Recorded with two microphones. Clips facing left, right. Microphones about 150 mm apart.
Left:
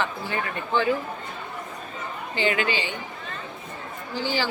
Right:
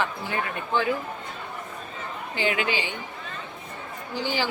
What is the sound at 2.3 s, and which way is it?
Speech, 10° right (ahead or behind).